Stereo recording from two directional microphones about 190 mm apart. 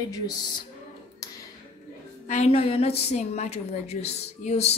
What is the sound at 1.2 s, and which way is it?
Tap, 20° left (ahead or behind).